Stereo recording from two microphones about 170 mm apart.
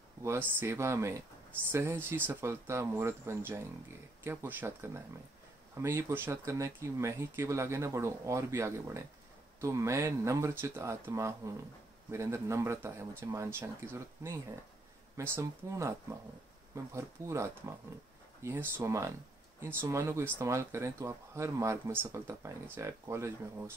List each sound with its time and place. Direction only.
0.2 s speech: 15° right (ahead or behind)